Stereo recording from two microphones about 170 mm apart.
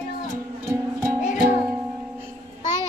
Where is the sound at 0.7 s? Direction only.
15° right (ahead or behind).